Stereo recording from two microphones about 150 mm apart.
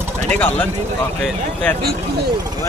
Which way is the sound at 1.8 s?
90° right.